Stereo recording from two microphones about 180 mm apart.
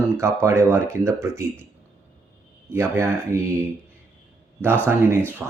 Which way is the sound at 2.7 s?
15° right (ahead or behind).